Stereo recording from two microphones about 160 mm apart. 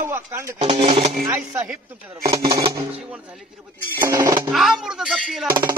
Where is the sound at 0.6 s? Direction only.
35° right (ahead or behind).